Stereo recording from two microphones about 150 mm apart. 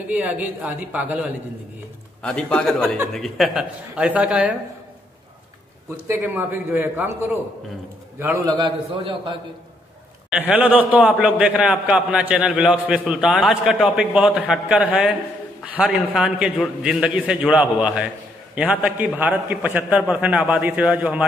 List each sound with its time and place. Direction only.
0.1 s a man's voice: 10° right (ahead or behind)
2.2 s a man's voice: 5° left (ahead or behind)
6.0 s a man's voice: 15° right (ahead or behind)
8.5 s a man's voice: 30° right (ahead or behind)
10.5 s a man's voice: 10° right (ahead or behind)